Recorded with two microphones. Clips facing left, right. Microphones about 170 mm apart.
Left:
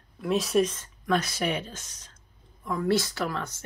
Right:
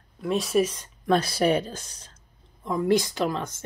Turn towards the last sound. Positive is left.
turn(degrees=-20)  # may be behind; listen again after turning